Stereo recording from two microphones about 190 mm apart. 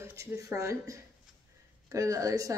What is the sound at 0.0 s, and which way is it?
Speech, 15° right (ahead or behind).